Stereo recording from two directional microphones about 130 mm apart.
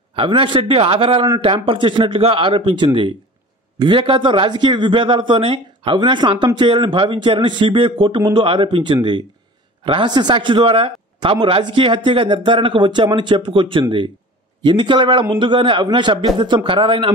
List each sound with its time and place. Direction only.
0.1 s a man's voice: 45° right (ahead or behind)